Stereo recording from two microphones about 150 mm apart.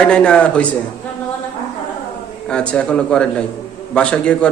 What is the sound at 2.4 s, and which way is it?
A man's voice, 5° left (ahead or behind).